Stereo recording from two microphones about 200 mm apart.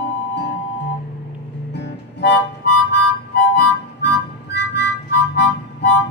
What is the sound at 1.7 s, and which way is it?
Music, 60° left (ahead or behind).